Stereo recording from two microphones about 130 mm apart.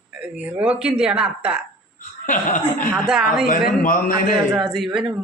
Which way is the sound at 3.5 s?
90° left.